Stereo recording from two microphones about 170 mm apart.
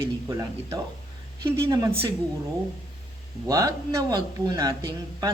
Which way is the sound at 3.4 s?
20° right (ahead or behind).